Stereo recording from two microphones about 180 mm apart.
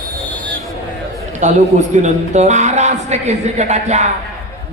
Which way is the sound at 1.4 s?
40° right (ahead or behind).